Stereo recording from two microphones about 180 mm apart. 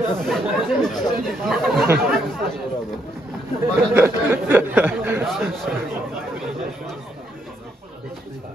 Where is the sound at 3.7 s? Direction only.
15° right (ahead or behind).